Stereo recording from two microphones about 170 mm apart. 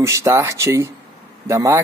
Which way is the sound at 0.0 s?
15° right (ahead or behind).